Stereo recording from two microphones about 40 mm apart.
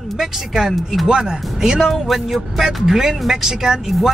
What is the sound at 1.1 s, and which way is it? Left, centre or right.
Speech, centre.